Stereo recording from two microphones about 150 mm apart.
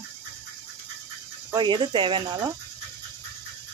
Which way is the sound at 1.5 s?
30° right (ahead or behind).